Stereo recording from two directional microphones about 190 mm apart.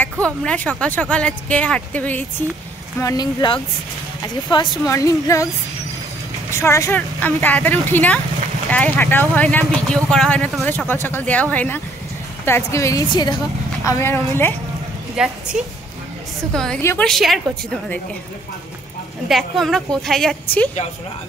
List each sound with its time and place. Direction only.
0.0 s speech: 5° left (ahead or behind)
3.0 s speech: 20° left (ahead or behind)
6.5 s speech: 15° left (ahead or behind)
15.1 s a woman's voice: 5° right (ahead or behind)
19.2 s a woman's voice: centre (ahead or behind)